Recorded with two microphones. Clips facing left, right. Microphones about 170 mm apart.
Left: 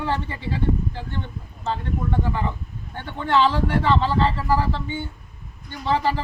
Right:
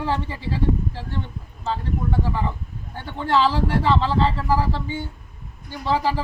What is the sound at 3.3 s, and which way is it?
Speech, 5° right (ahead or behind).